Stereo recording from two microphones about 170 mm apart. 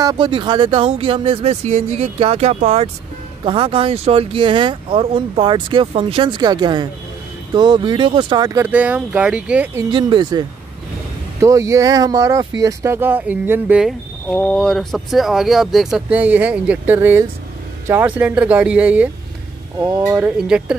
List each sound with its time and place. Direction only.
0.0 s speech: 25° right (ahead or behind); by 9.7 s 5° right (ahead or behind)
9.8 s speech: 25° right (ahead or behind); by 13.9 s 5° right (ahead or behind)
14.3 s speech: 5° left (ahead or behind)
19.8 s speech: 20° right (ahead or behind)
20.2 s speech: 5° right (ahead or behind)